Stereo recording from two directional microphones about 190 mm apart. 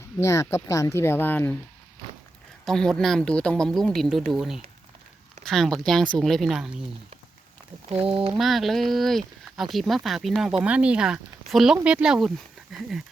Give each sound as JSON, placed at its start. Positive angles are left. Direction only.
{"t": 0.2, "sound": "speech", "side_deg": 15}
{"t": 2.6, "sound": "speech", "side_deg": 5}
{"t": 8.1, "sound": "speech", "side_deg": -25}
{"t": 8.4, "sound": "speech", "side_deg": 0}